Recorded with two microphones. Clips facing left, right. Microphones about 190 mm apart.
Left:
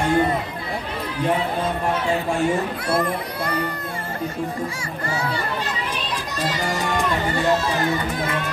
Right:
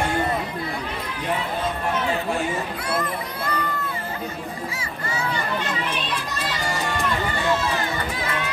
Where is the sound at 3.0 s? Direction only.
35° left (ahead or behind).